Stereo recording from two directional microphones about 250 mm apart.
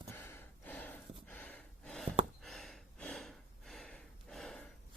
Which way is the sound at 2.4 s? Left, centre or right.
Centre.